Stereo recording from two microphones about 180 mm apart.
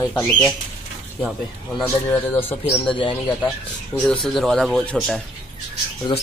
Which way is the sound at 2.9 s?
25° left (ahead or behind).